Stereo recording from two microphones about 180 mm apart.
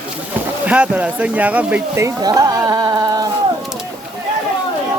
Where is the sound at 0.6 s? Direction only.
5° right (ahead or behind).